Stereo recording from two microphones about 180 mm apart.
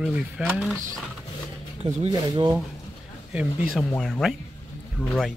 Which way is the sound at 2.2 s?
20° right (ahead or behind).